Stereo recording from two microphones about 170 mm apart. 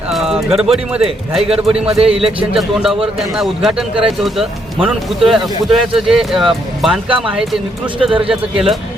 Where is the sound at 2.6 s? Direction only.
Centre (ahead or behind).